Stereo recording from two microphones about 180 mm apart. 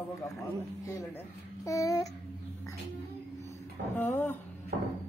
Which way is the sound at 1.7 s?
20° left (ahead or behind).